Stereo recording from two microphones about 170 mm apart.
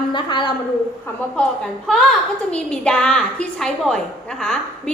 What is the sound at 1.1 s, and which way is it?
Speech, 15° left (ahead or behind).